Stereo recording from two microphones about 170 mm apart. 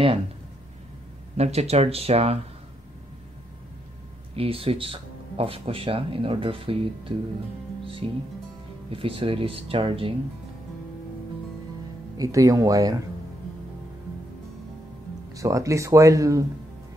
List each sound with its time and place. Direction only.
1.3 s speech: 40° right (ahead or behind)
4.4 s speech: 35° right (ahead or behind)
12.2 s speech: 20° right (ahead or behind)
15.3 s speech: 20° right (ahead or behind)